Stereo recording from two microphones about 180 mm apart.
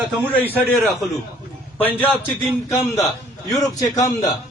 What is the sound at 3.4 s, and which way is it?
Speech, 20° left (ahead or behind).